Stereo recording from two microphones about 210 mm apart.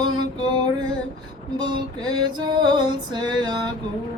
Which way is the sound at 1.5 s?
20° right (ahead or behind).